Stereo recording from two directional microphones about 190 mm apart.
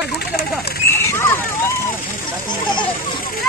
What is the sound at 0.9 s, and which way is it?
Hubbub, 15° left (ahead or behind).